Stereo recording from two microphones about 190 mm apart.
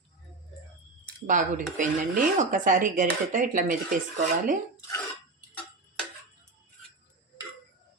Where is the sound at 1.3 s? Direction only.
45° right (ahead or behind).